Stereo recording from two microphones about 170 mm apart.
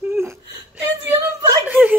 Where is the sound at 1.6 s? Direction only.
10° right (ahead or behind).